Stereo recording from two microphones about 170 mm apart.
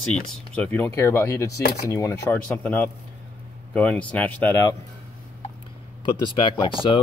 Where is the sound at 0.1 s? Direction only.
10° left (ahead or behind).